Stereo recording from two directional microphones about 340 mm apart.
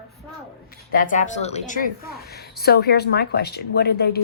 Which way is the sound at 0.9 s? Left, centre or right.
Left.